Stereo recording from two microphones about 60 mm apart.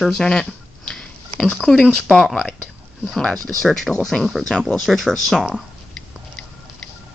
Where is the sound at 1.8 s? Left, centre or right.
Centre.